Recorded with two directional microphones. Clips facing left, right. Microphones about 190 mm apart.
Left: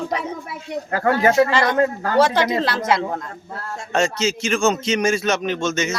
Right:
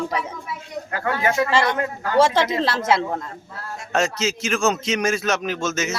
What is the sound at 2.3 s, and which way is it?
A woman's voice, centre (ahead or behind).